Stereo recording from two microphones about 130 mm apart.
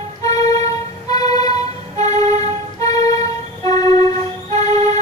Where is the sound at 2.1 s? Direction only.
60° right (ahead or behind).